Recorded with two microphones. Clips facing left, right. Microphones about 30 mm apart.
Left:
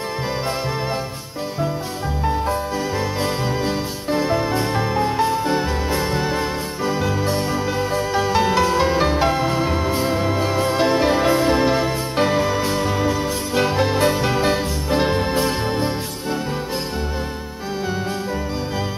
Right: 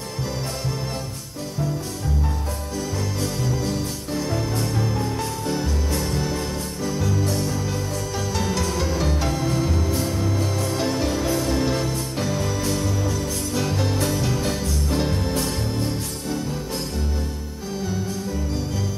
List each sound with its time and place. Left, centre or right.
3.2 s music: left